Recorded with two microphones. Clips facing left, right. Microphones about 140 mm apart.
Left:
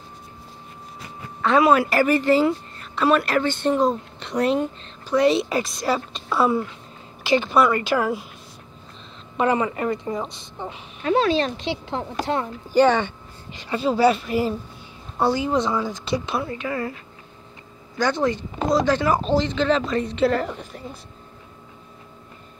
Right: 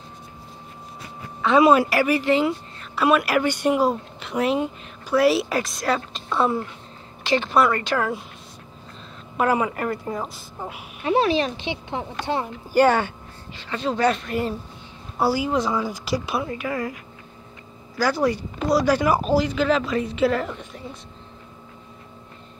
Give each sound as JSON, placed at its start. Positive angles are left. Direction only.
{"t": 1.6, "sound": "a woman's voice", "side_deg": -15}
{"t": 1.9, "sound": "a woman's voice", "side_deg": -5}
{"t": 9.4, "sound": "a woman's voice", "side_deg": -5}
{"t": 13.6, "sound": "a woman's voice", "side_deg": 10}
{"t": 15.1, "sound": "a woman's voice", "side_deg": -5}